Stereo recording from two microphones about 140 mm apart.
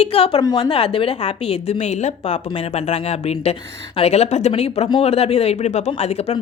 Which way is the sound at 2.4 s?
45° left (ahead or behind).